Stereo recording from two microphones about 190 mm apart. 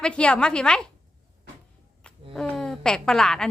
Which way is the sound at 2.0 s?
5° left (ahead or behind).